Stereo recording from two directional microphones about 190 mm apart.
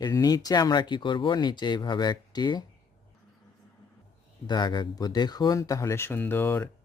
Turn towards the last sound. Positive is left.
turn(degrees=10)  # may be behind; listen again after turning